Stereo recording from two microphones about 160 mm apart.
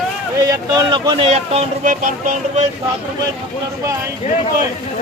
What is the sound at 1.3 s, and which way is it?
Speech, 45° right (ahead or behind).